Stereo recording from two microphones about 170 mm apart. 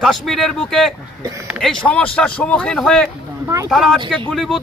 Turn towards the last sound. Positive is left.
turn(degrees=0)  # may be behind; listen again after turning